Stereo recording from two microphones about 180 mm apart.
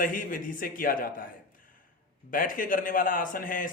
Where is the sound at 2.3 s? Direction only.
50° left (ahead or behind).